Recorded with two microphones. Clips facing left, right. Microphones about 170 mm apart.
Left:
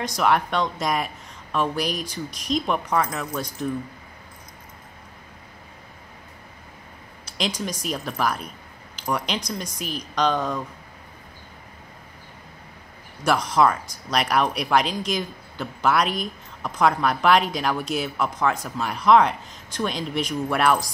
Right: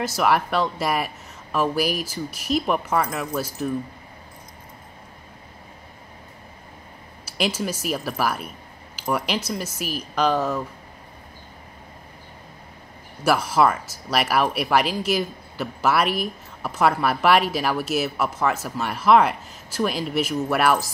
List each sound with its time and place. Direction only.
0.0 s speech: 5° right (ahead or behind)
7.2 s speech: 5° right (ahead or behind)
13.2 s speech: 5° right (ahead or behind)